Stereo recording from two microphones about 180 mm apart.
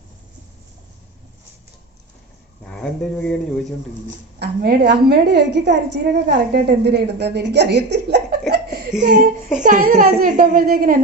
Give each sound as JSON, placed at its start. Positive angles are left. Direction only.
{"t": 2.6, "sound": "speech", "side_deg": 5}
{"t": 4.4, "sound": "a woman's voice", "side_deg": -65}
{"t": 9.0, "sound": "a woman's voice", "side_deg": -45}